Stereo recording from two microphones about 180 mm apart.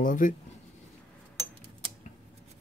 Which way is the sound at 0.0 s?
45° left (ahead or behind).